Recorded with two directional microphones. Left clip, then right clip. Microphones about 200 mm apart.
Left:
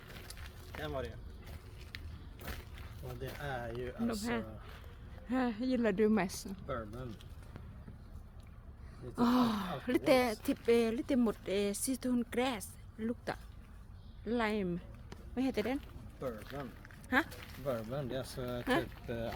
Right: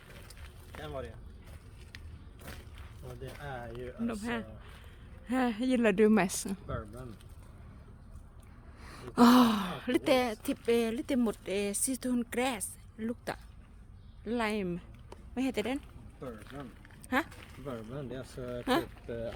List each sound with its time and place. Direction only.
0.8 s speech: 20° left (ahead or behind)
2.5 s a sound: 15° left (ahead or behind)
3.1 s speech: 15° left (ahead or behind)
4.0 s speech: 15° right (ahead or behind)
8.9 s speech: 40° right (ahead or behind); by 15.8 s 20° right (ahead or behind)
16.5 s speech: 5° left (ahead or behind)
17.1 s speech: 15° right (ahead or behind)
17.7 s speech: 45° left (ahead or behind)